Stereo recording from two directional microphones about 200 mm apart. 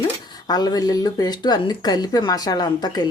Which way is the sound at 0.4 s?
20° left (ahead or behind).